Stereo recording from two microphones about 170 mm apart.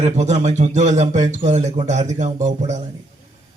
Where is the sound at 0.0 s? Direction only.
45° right (ahead or behind).